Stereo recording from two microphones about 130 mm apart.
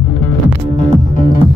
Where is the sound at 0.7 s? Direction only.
80° left.